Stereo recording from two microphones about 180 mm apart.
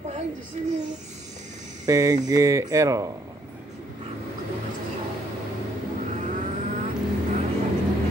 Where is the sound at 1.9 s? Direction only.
20° right (ahead or behind).